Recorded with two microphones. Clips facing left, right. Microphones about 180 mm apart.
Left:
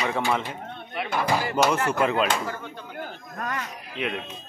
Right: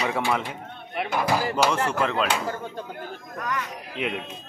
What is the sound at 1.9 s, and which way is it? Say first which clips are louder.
Speech: left 2 dB; 5° left (ahead or behind).